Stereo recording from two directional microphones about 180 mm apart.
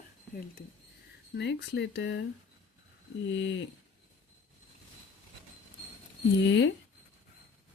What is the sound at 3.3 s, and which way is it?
Speech, 90° left.